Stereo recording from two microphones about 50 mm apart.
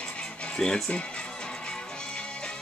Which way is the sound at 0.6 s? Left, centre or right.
Centre.